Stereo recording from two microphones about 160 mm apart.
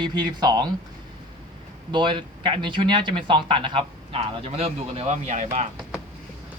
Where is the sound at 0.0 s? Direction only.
25° right (ahead or behind).